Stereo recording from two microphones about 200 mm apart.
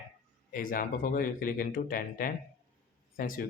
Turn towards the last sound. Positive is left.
turn(degrees=45)  # may be behind; listen again after turning